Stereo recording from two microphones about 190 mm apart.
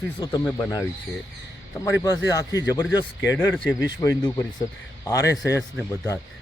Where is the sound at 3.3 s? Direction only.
5° left (ahead or behind).